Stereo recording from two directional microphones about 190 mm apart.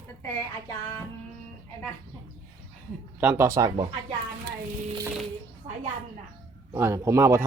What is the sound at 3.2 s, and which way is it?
Speech, 10° right (ahead or behind).